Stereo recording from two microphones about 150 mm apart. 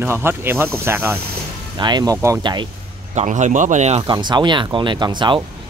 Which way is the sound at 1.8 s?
30° right (ahead or behind).